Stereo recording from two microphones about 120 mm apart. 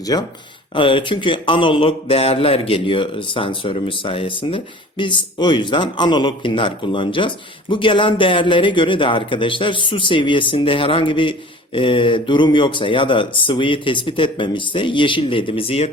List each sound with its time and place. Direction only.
0.0 s speech: 30° left (ahead or behind)
0.7 s speech: 45° left (ahead or behind)